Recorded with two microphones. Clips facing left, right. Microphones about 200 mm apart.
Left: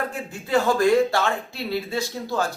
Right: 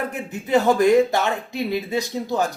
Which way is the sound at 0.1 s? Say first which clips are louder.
Right 3 dB; 20° right (ahead or behind).